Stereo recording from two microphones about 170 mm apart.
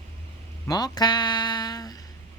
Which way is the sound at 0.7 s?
25° left (ahead or behind).